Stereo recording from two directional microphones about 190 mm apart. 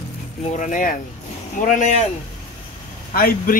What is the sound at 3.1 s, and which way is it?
Speech, 50° left (ahead or behind).